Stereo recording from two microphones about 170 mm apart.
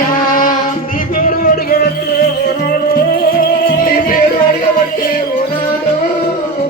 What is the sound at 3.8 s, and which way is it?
Music, 55° left (ahead or behind).